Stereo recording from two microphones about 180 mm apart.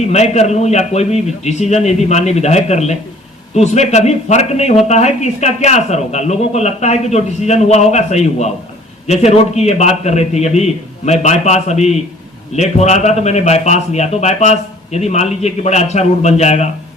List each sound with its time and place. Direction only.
0.1 s a man's voice: 40° left (ahead or behind)